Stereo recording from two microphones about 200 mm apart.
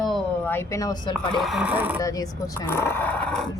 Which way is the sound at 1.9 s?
15° left (ahead or behind).